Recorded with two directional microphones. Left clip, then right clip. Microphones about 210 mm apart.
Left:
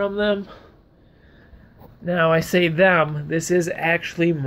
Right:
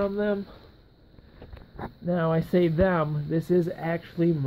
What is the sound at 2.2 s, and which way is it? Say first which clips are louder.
Speech: left 7 dB; 10° right (ahead or behind).